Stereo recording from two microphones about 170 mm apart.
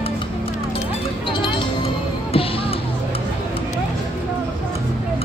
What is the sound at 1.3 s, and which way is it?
Music, 30° left (ahead or behind).